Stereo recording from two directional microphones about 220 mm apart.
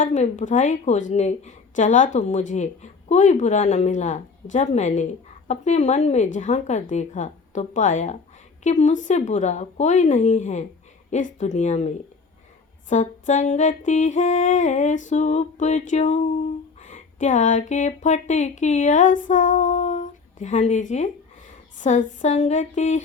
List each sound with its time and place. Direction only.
0.0 s speech: 35° left (ahead or behind)
12.9 s speech: 35° left (ahead or behind)